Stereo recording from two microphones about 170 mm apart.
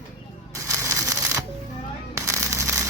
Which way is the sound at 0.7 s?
15° right (ahead or behind).